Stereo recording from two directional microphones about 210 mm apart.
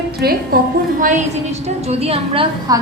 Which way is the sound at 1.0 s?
35° right (ahead or behind).